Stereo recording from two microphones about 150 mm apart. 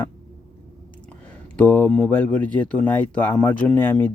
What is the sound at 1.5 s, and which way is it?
Speech, 10° left (ahead or behind).